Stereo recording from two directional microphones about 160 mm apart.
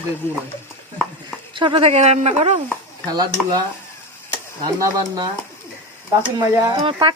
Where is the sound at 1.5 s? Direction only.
30° right (ahead or behind).